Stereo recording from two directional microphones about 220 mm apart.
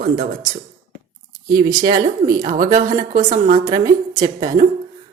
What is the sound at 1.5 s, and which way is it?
A woman's voice, 40° right (ahead or behind).